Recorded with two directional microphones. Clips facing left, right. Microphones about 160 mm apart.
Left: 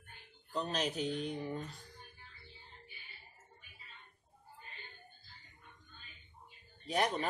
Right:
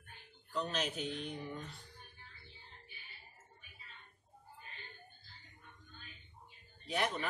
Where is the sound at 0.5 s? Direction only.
40° left (ahead or behind).